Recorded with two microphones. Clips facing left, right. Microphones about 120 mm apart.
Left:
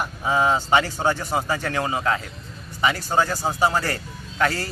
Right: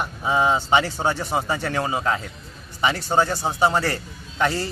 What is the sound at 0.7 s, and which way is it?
Speech, 15° right (ahead or behind).